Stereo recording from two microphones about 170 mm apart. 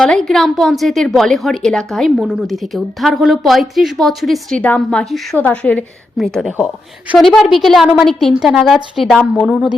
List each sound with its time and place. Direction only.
0.0 s a woman's voice: 5° left (ahead or behind)